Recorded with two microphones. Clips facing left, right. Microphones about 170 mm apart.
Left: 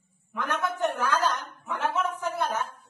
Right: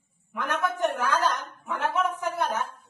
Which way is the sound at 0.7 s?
15° right (ahead or behind).